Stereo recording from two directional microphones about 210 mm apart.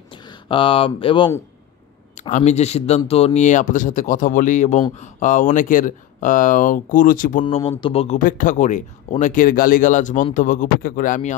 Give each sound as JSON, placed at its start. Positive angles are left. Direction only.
{"t": 0.1, "sound": "speech", "side_deg": 20}
{"t": 2.1, "sound": "speech", "side_deg": 35}
{"t": 7.4, "sound": "speech", "side_deg": 25}
{"t": 8.2, "sound": "speech", "side_deg": 40}